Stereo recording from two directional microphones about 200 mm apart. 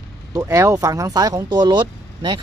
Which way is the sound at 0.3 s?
15° right (ahead or behind).